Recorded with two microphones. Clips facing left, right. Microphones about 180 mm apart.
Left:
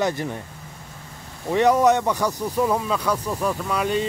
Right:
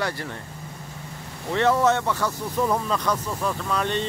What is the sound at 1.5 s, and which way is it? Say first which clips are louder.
Speech: left 3 dB; 15° left (ahead or behind).